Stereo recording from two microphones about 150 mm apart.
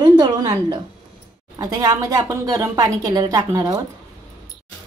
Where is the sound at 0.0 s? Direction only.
30° right (ahead or behind).